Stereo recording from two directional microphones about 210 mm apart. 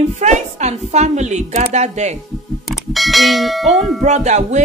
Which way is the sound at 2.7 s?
Centre (ahead or behind).